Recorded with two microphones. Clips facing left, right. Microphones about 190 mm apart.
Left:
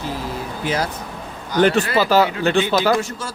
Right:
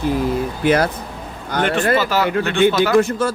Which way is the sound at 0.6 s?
60° right (ahead or behind).